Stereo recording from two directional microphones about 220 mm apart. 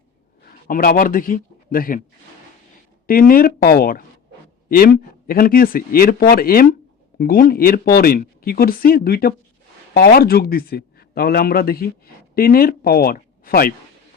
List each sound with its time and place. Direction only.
0.7 s speech: 40° left (ahead or behind)
3.1 s speech: 40° left (ahead or behind)
5.3 s a man's voice: 40° left (ahead or behind)